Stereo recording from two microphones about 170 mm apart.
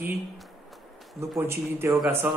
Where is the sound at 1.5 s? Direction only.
15° right (ahead or behind).